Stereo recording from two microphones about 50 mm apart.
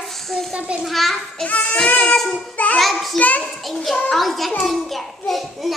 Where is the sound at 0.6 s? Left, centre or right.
Right.